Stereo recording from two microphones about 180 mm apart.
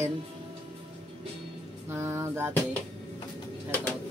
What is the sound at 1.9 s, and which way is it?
Music, 15° right (ahead or behind).